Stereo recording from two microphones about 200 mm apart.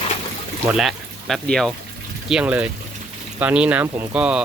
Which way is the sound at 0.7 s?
Centre (ahead or behind).